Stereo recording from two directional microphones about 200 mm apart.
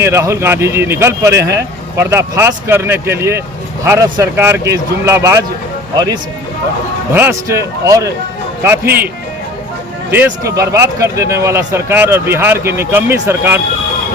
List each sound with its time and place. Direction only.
0.0 s speech: 15° right (ahead or behind)
7.1 s speech: 10° right (ahead or behind)
10.1 s speech: 15° right (ahead or behind)